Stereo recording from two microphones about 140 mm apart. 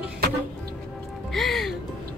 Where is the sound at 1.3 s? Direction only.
Centre (ahead or behind).